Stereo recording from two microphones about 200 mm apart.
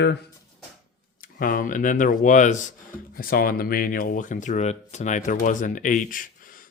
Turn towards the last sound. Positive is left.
turn(degrees=45)  # may be behind; listen again after turning